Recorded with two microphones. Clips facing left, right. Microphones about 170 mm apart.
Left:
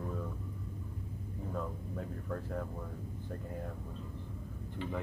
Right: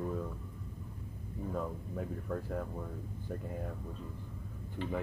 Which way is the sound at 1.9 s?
5° right (ahead or behind).